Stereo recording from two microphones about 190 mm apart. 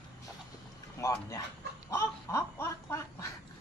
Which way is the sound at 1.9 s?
15° left (ahead or behind).